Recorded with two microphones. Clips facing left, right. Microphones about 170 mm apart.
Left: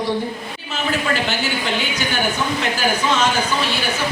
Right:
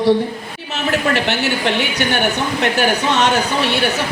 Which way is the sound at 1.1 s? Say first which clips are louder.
Right 3 dB; 70° right (ahead or behind).